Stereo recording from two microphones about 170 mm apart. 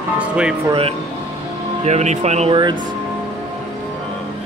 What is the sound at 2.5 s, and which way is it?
Speech, 25° right (ahead or behind).